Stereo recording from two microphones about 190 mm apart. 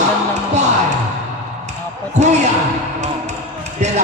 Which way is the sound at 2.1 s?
35° right (ahead or behind).